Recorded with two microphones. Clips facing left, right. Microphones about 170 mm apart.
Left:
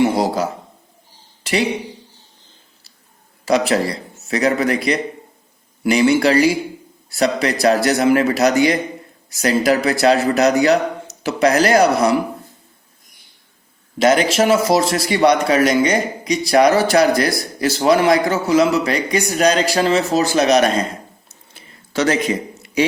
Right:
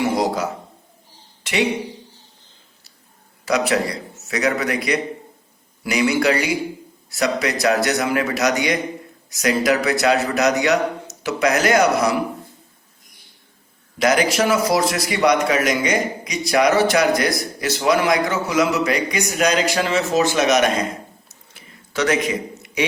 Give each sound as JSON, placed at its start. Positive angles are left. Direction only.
{"t": 1.5, "sound": "speech", "side_deg": 35}
{"t": 3.4, "sound": "speech", "side_deg": 30}
{"t": 14.0, "sound": "speech", "side_deg": 25}
{"t": 21.2, "sound": "a sound", "side_deg": 30}